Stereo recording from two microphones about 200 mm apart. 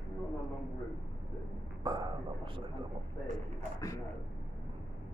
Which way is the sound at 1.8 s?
20° right (ahead or behind).